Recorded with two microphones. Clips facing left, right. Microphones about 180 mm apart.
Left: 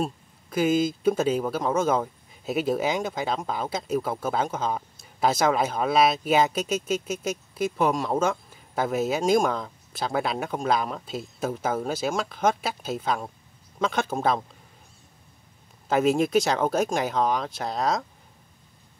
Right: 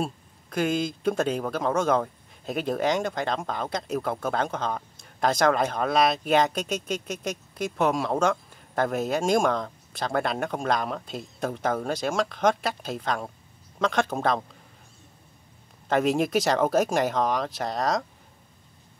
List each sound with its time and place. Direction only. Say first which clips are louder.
0.5 s a man's voice: left 3 dB; 5° left (ahead or behind)
15.9 s a man's voice: left 2 dB; centre (ahead or behind)